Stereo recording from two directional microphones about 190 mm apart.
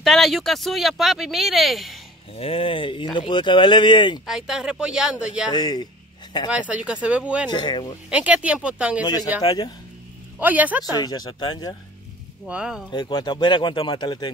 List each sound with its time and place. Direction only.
0.0 s speech: centre (ahead or behind)
2.3 s speech: 30° left (ahead or behind)
4.3 s speech: 5° right (ahead or behind)
5.5 s speech: 20° left (ahead or behind)
6.7 s speech: 5° right (ahead or behind)
7.4 s speech: 25° left (ahead or behind)
8.1 s speech: 5° right (ahead or behind)
9.0 s speech: 20° left (ahead or behind)
10.4 s speech: 10° right (ahead or behind)
10.9 s speech: 20° left (ahead or behind)
12.4 s speech: 5° right (ahead or behind)
12.9 s speech: 20° left (ahead or behind)